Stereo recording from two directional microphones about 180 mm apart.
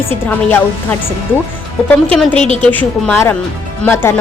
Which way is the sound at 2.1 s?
5° left (ahead or behind).